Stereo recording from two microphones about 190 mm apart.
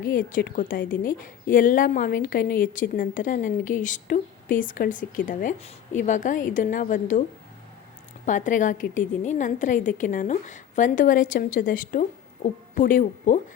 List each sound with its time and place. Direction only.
0.0 s a woman's voice: 50° left (ahead or behind)
8.3 s a woman's voice: 40° left (ahead or behind)